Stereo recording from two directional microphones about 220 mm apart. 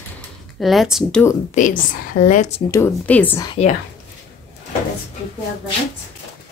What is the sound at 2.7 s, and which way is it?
Speech, 10° left (ahead or behind).